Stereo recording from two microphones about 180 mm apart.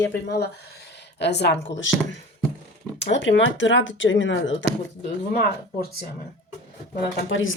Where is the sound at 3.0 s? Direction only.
90° left.